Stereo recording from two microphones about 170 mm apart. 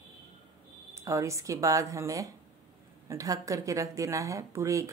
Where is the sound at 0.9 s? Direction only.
20° right (ahead or behind).